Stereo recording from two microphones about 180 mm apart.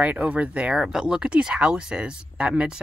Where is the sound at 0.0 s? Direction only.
5° right (ahead or behind).